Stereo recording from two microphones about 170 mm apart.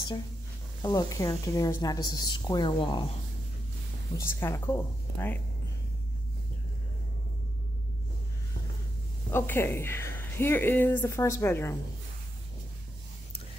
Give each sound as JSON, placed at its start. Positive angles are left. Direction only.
{"t": 0.8, "sound": "a woman's voice", "side_deg": 20}
{"t": 4.2, "sound": "a woman's voice", "side_deg": 15}
{"t": 9.3, "sound": "a woman's voice", "side_deg": 15}